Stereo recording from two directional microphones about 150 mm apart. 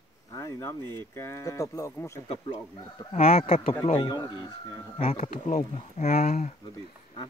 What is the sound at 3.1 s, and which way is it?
Speech, 40° left (ahead or behind).